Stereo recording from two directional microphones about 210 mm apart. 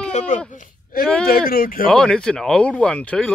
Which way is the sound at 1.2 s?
45° left (ahead or behind).